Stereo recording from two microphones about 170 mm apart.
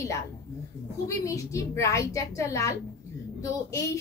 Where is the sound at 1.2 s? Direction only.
20° left (ahead or behind).